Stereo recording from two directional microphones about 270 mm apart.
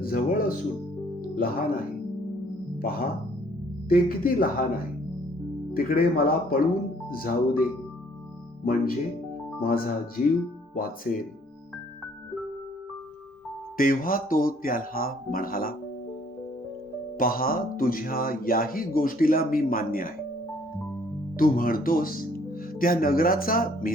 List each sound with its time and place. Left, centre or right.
0.0 s speech: left
2.8 s speech: left
13.7 s speech: left
17.2 s speech: left
21.3 s speech: left